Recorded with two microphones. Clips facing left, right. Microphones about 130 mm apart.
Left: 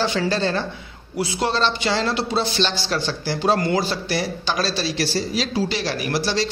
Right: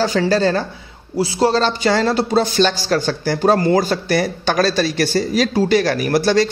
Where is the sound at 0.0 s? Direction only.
40° right (ahead or behind).